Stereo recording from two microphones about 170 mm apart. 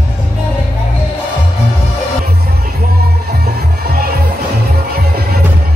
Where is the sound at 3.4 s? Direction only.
65° right (ahead or behind).